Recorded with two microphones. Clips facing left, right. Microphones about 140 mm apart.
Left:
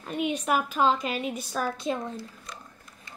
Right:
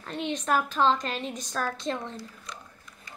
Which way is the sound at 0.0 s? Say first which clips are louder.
Left 3 dB; 10° left (ahead or behind).